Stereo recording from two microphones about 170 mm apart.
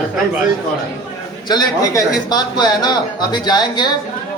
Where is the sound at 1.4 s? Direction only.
20° left (ahead or behind).